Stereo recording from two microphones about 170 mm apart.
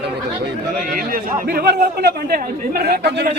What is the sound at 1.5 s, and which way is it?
Speech, 65° right (ahead or behind).